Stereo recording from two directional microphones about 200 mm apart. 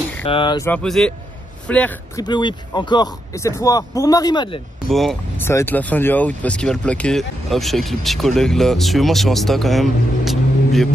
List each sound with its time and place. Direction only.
0.3 s speech: 25° left (ahead or behind)
0.7 s speech: 5° left (ahead or behind)
2.2 s speech: 20° left (ahead or behind)
4.8 s speech: centre (ahead or behind)
5.4 s speech: 10° left (ahead or behind)